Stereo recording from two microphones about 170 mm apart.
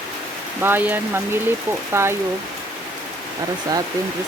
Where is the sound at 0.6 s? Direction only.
10° right (ahead or behind).